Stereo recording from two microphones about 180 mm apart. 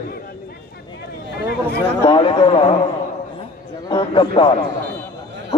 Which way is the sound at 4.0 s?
30° left (ahead or behind).